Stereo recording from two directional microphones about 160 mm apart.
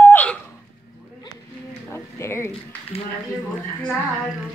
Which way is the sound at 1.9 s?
15° left (ahead or behind).